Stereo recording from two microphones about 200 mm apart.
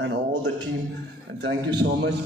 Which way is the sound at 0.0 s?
60° right (ahead or behind).